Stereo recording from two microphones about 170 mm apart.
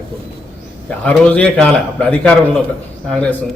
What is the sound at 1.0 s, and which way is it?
A man's voice, 10° left (ahead or behind).